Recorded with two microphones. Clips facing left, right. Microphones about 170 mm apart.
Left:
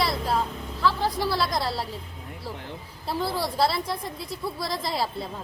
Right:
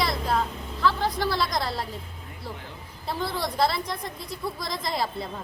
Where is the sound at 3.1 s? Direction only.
5° left (ahead or behind).